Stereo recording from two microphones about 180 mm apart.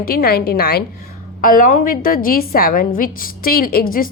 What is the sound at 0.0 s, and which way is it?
A woman's voice, 55° left (ahead or behind).